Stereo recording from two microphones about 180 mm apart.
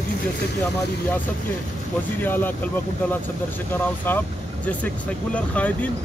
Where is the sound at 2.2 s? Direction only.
10° left (ahead or behind).